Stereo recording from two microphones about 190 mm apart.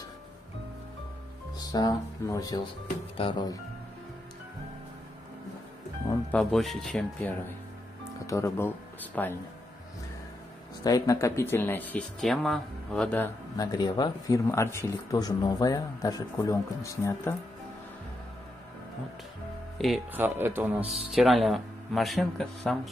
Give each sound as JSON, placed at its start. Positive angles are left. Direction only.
{"t": 1.6, "sound": "speech", "side_deg": 20}
{"t": 6.3, "sound": "speech", "side_deg": 0}
{"t": 10.8, "sound": "speech", "side_deg": 20}
{"t": 13.6, "sound": "speech", "side_deg": 20}
{"t": 19.8, "sound": "speech", "side_deg": 0}
{"t": 20.2, "sound": "a man's voice", "side_deg": -10}